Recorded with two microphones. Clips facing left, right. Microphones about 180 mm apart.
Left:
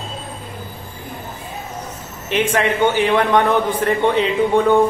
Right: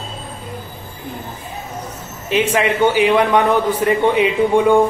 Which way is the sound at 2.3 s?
10° right (ahead or behind).